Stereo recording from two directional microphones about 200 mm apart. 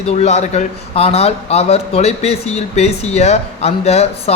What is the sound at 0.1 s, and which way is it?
A man's voice, 35° left (ahead or behind).